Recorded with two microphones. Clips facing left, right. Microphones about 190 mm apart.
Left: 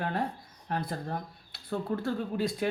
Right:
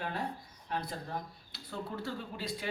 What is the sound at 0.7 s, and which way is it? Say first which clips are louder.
Speech: left 4 dB; 50° left (ahead or behind).